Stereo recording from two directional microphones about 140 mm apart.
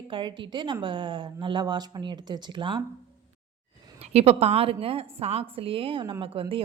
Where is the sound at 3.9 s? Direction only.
45° right (ahead or behind).